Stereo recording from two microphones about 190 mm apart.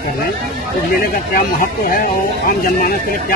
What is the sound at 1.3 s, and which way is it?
Speech, 45° left (ahead or behind).